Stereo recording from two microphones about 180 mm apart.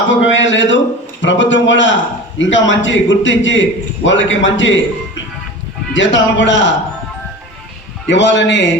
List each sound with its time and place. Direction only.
0.1 s a man's voice: 90° left
8.0 s a man's voice: 85° left